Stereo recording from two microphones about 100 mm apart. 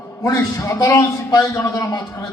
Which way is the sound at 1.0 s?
40° left (ahead or behind).